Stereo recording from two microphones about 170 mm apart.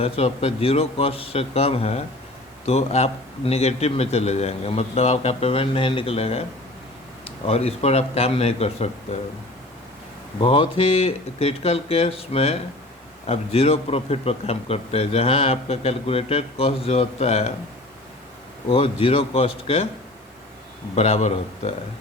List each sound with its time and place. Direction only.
0.0 s a man's voice: 35° left (ahead or behind)
10.4 s a man's voice: 30° left (ahead or behind)
18.7 s a man's voice: 35° left (ahead or behind)
20.9 s a man's voice: 40° left (ahead or behind)